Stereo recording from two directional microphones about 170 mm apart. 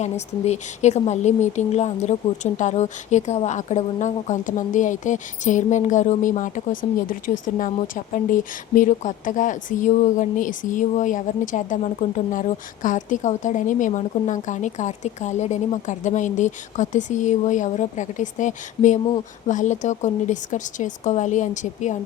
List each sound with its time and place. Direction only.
0.0 s speech: 40° left (ahead or behind)